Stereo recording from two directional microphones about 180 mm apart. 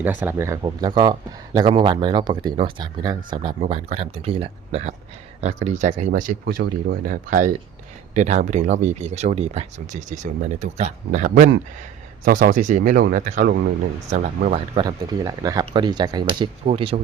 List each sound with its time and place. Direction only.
0.0 s speech: 10° right (ahead or behind); by 13.6 s 45° right (ahead or behind)
14.1 s speech: 30° right (ahead or behind)